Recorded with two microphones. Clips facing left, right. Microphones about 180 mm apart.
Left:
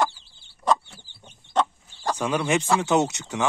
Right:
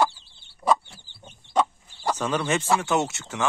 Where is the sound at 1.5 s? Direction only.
10° right (ahead or behind).